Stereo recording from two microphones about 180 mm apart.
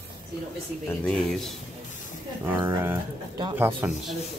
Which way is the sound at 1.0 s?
5° left (ahead or behind).